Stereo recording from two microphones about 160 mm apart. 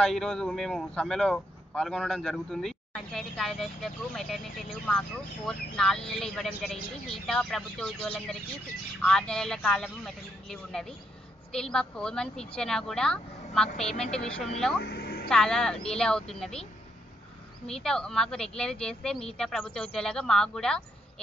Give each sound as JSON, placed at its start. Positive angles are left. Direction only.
{"t": 0.0, "sound": "a man's voice", "side_deg": 5}
{"t": 14.8, "sound": "vehicle", "side_deg": 90}
{"t": 15.2, "sound": "a man's voice", "side_deg": 5}
{"t": 17.6, "sound": "a man's voice", "side_deg": 5}